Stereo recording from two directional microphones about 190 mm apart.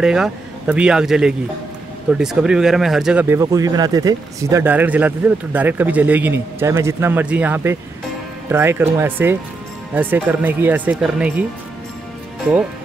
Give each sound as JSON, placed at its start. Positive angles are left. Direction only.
{"t": 0.0, "sound": "speech", "side_deg": -5}